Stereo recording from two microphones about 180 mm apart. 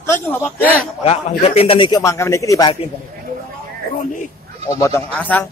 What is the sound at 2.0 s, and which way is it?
Speech, 15° left (ahead or behind).